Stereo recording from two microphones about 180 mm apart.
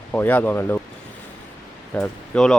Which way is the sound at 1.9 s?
5° left (ahead or behind).